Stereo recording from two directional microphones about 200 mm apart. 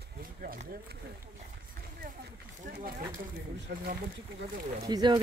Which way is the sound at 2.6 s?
50° right (ahead or behind).